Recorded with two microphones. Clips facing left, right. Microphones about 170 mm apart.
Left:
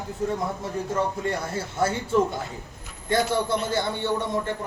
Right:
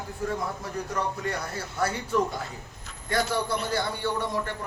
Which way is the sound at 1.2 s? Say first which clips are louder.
Left 4 dB; 25° left (ahead or behind).